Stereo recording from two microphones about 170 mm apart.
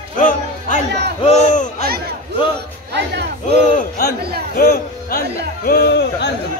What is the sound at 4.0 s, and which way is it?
A man's voice, 65° left (ahead or behind).